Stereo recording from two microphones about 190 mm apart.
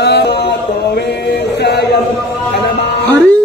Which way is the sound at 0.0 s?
65° left (ahead or behind).